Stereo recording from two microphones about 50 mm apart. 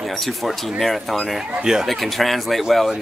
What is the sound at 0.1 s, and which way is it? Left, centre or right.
Speech, centre.